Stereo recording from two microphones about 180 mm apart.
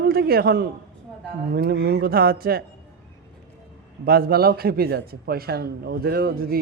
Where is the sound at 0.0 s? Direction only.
60° right (ahead or behind).